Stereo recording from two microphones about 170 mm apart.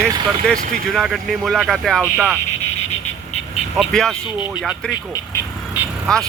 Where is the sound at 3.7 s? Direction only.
Centre (ahead or behind).